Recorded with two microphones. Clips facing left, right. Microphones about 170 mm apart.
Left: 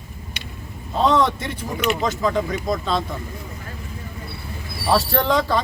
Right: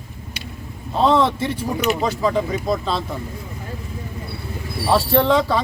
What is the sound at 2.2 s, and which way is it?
Speech, 5° right (ahead or behind).